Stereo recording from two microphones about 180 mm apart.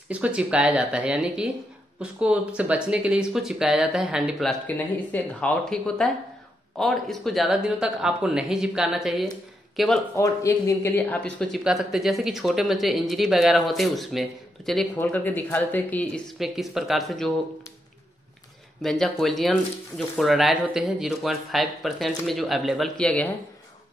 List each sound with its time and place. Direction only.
0.1 s speech: 5° right (ahead or behind)
10.1 s speech: 20° left (ahead or behind); by 17.3 s centre (ahead or behind)
18.8 s speech: centre (ahead or behind)